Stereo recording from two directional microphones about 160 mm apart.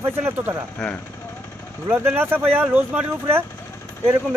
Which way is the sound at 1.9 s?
10° right (ahead or behind).